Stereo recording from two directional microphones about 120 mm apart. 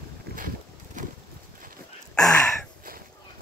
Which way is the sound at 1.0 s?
90° right.